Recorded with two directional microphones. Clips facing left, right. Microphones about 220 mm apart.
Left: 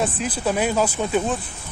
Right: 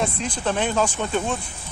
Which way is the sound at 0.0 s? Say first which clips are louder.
Left 2 dB; 5° left (ahead or behind).